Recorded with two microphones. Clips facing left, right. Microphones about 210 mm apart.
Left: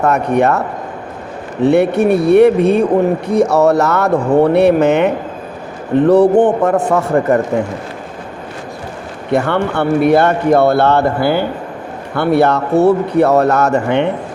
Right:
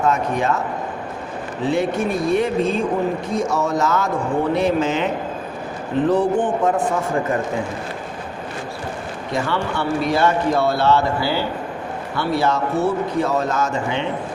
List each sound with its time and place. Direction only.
0.0 s speech: 65° left (ahead or behind)
1.6 s speech: 65° left (ahead or behind)
9.3 s speech: 60° left (ahead or behind)